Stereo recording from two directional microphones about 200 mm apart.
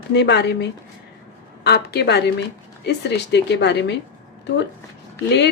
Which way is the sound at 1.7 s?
55° left (ahead or behind).